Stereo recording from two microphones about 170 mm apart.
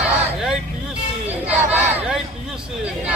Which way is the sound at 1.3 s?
10° right (ahead or behind).